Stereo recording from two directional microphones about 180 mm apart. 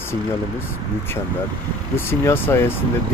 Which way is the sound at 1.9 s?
15° left (ahead or behind).